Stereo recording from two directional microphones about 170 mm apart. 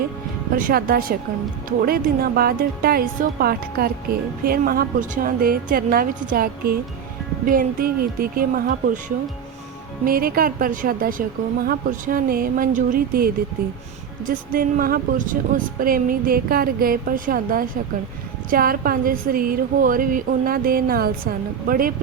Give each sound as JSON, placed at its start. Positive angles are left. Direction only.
{"t": 0.5, "sound": "speech", "side_deg": -55}
{"t": 10.1, "sound": "speech", "side_deg": -60}